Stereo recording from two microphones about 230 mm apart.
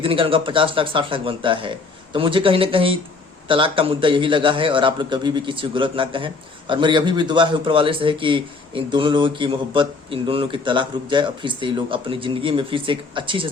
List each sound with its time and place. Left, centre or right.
0.0 s a man's voice: right